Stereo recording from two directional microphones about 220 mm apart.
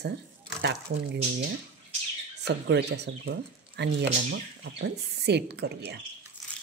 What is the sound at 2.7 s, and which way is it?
Speech, 50° right (ahead or behind).